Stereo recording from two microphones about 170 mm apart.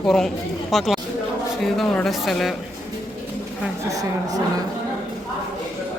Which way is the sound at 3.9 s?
20° right (ahead or behind).